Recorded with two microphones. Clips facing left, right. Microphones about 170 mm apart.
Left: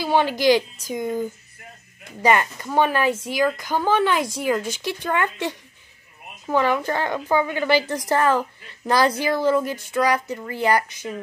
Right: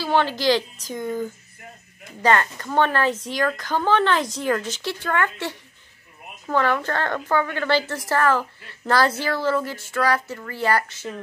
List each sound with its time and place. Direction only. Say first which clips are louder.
0.0 s speech: left 2 dB; 15° left (ahead or behind)